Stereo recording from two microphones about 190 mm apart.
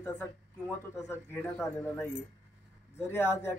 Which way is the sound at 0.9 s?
10° left (ahead or behind).